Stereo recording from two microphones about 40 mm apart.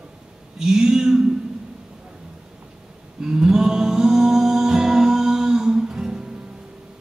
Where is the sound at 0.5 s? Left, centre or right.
Centre.